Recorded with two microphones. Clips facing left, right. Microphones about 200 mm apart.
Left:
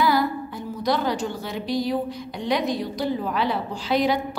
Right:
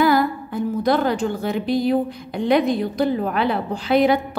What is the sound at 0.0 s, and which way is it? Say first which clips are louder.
A woman's voice: right 4 dB; 55° right (ahead or behind).